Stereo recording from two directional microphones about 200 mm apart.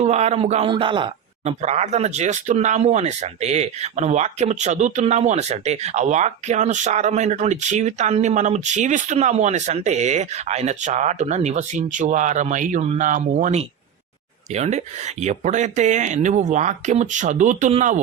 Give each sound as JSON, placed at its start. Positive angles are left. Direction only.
{"t": 0.0, "sound": "a man's voice", "side_deg": -30}